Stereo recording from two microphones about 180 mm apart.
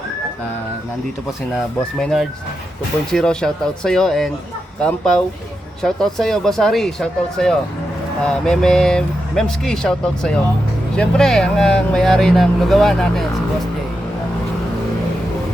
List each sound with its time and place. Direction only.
1.5 s speech: 5° left (ahead or behind)